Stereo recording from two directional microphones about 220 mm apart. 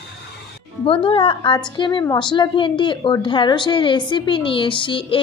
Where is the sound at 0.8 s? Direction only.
25° left (ahead or behind).